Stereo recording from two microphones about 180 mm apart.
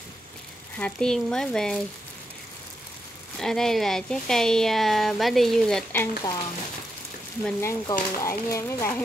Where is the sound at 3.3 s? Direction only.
Centre (ahead or behind).